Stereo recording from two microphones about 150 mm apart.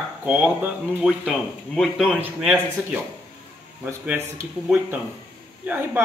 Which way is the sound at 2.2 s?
10° right (ahead or behind).